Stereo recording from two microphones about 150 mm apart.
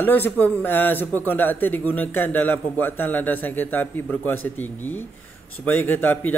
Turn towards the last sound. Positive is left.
turn(degrees=10)  # may be behind; listen again after turning